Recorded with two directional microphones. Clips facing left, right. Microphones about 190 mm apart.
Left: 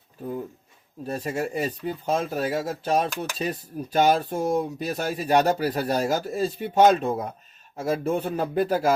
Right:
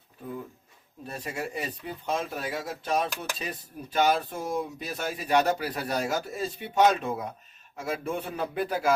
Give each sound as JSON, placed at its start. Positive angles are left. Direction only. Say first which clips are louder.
{"t": 1.0, "sound": "speech", "louder": "left 7 dB", "side_deg": 40}